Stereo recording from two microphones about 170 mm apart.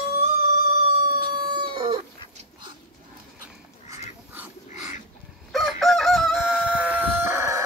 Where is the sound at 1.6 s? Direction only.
30° right (ahead or behind).